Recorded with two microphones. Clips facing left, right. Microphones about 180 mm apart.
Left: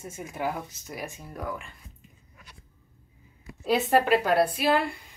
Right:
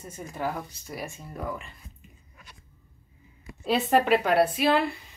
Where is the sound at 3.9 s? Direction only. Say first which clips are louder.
Right 1 dB; centre (ahead or behind).